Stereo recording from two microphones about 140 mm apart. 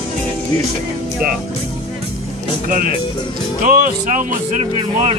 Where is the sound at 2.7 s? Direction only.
80° right; by 4.6 s 65° right (ahead or behind).